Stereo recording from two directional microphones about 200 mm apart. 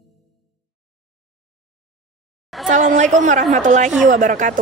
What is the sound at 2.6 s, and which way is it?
A man's voice, 40° right (ahead or behind).